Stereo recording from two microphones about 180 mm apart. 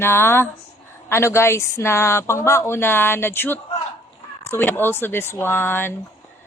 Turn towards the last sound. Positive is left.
turn(degrees=10)  # may be behind; listen again after turning